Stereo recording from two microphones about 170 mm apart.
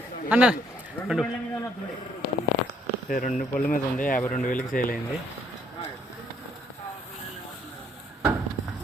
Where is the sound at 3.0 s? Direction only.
55° left (ahead or behind).